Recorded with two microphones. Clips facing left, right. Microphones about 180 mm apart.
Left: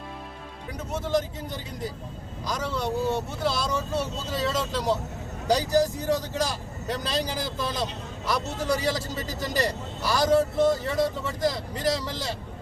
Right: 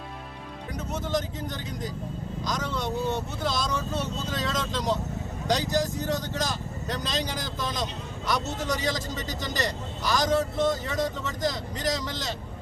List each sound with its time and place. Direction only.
0.9 s speech: 5° left (ahead or behind)
2.5 s speech: 5° left (ahead or behind)
8.7 s speech: 30° left (ahead or behind)
10.0 s speech: 10° left (ahead or behind)